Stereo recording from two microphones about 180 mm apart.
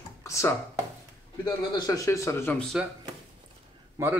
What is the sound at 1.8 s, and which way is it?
Speech, 20° left (ahead or behind).